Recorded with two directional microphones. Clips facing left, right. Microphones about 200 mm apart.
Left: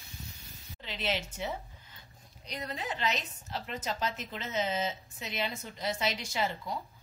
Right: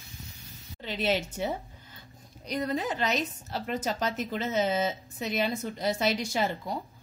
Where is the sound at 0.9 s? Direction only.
45° right (ahead or behind).